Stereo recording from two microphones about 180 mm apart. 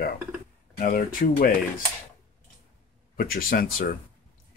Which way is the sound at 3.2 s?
55° left (ahead or behind).